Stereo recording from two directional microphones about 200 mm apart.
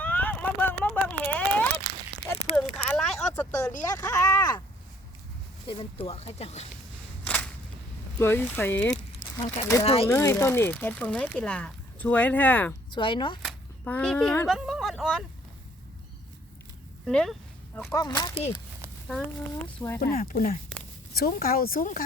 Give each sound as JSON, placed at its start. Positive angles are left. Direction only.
{"t": 0.0, "sound": "a sound", "side_deg": 10}
{"t": 5.6, "sound": "speech", "side_deg": 25}
{"t": 7.3, "sound": "a sound", "side_deg": 5}
{"t": 8.2, "sound": "speech", "side_deg": 10}
{"t": 9.8, "sound": "speech", "side_deg": 30}
{"t": 10.1, "sound": "speech", "side_deg": 15}
{"t": 12.9, "sound": "speech", "side_deg": 25}
{"t": 13.4, "sound": "a sound", "side_deg": 5}
{"t": 17.1, "sound": "speech", "side_deg": 5}
{"t": 17.9, "sound": "speech", "side_deg": 20}
{"t": 19.6, "sound": "speech", "side_deg": 10}
{"t": 20.0, "sound": "speech", "side_deg": 45}